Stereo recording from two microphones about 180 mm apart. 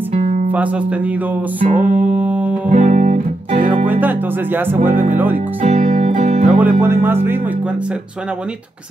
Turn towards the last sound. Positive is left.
turn(degrees=-10)  # may be behind; listen again after turning